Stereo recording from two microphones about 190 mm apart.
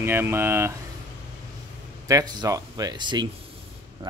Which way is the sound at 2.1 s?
20° right (ahead or behind).